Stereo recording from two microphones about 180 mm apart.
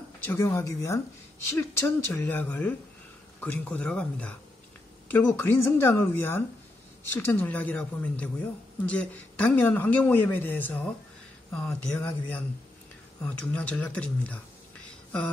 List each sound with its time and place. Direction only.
0.3 s a woman's voice: 15° left (ahead or behind)